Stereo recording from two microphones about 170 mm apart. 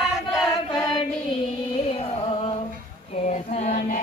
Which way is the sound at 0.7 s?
25° left (ahead or behind).